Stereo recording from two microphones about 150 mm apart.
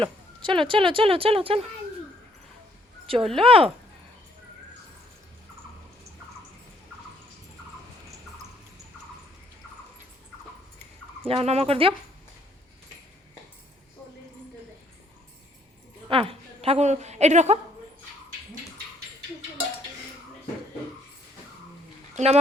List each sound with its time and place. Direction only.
0.0 s speech: 35° right (ahead or behind)
3.2 s speech: centre (ahead or behind)
3.4 s speech: 40° right (ahead or behind)
11.3 s speech: 40° right (ahead or behind)
16.0 s a woman's voice: 40° right (ahead or behind)
22.1 s speech: 45° right (ahead or behind)